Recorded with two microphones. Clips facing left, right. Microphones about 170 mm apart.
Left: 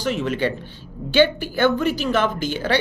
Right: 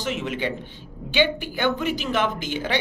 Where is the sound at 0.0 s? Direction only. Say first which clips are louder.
Left 5 dB; 20° right (ahead or behind).